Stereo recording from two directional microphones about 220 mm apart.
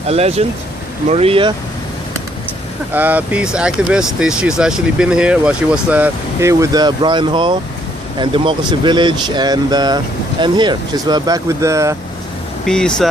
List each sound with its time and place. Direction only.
0.1 s speech: 30° right (ahead or behind)
2.9 s speech: 5° right (ahead or behind)
12.6 s speech: 5° left (ahead or behind)